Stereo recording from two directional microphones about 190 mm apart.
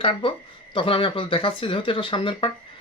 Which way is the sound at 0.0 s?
25° left (ahead or behind).